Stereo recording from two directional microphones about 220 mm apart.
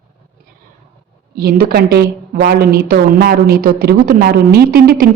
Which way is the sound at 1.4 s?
45° right (ahead or behind).